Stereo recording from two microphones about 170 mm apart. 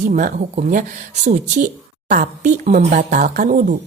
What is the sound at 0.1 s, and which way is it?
Speech, 50° right (ahead or behind).